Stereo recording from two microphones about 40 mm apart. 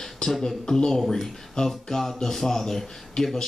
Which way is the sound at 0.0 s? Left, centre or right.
Centre.